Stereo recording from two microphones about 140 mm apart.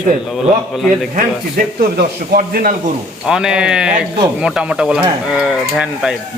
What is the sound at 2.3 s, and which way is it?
Speech, 90° right.